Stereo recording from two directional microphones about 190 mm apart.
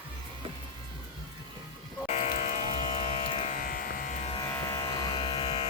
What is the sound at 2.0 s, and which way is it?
Sheep, 35° left (ahead or behind).